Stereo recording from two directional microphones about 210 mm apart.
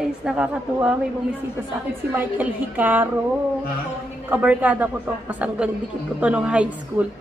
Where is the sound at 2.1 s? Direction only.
10° right (ahead or behind).